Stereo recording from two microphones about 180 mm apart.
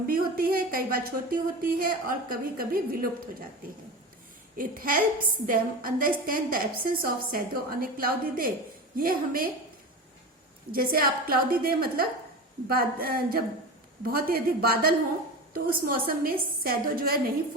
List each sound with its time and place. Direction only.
0.1 s a woman's voice: 55° right (ahead or behind)
4.5 s a woman's voice: 50° right (ahead or behind)
10.7 s a woman's voice: 55° right (ahead or behind)
16.0 s a woman's voice: 55° right (ahead or behind)